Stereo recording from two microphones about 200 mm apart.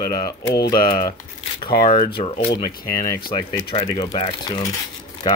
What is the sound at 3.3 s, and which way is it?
Speech, 25° left (ahead or behind).